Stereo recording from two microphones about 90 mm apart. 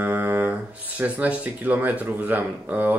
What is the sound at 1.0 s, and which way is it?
Speech, 20° right (ahead or behind).